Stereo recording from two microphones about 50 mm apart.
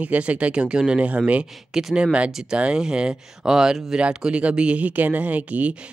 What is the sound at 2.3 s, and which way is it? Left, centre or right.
Speech, centre.